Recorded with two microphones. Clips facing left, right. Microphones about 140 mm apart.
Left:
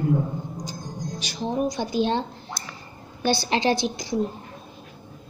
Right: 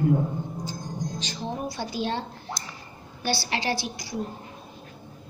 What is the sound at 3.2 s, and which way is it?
Speech, 20° left (ahead or behind).